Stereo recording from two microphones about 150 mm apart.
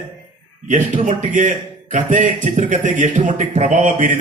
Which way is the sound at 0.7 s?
55° right (ahead or behind).